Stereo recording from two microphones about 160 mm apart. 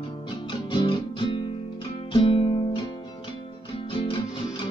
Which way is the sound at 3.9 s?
35° left (ahead or behind).